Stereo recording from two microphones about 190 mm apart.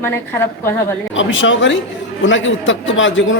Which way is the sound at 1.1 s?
85° left.